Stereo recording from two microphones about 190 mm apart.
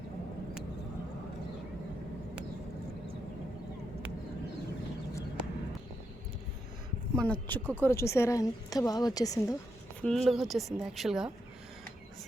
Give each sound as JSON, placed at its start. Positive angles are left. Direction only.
{"t": 7.2, "sound": "a woman's voice", "side_deg": 10}
{"t": 10.0, "sound": "a woman's voice", "side_deg": 0}